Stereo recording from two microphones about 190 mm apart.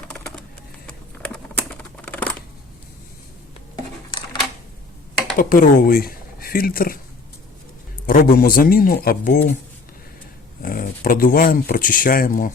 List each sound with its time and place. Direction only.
0.1 s typing: 5° left (ahead or behind)
0.9 s a sound: 5° left (ahead or behind)
2.0 s shuffling cards: 5° left (ahead or behind)
5.4 s speech: 50° left (ahead or behind)
8.0 s speech: 50° left (ahead or behind)
10.6 s speech: 50° left (ahead or behind)